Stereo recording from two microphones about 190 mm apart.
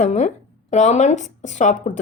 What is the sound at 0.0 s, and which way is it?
Speech, 40° left (ahead or behind).